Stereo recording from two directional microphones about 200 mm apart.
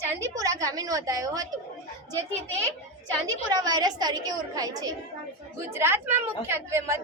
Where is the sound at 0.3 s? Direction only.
15° right (ahead or behind).